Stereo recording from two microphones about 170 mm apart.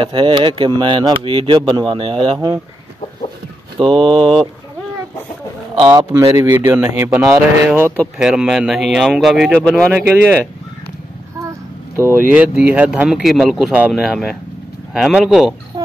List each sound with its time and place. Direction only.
0.0 s speech: 30° right (ahead or behind)
3.8 s speech: centre (ahead or behind)
5.8 s speech: 25° right (ahead or behind); by 9.8 s 5° left (ahead or behind)
10.2 s speech: 10° right (ahead or behind)
12.0 s speech: 10° right (ahead or behind)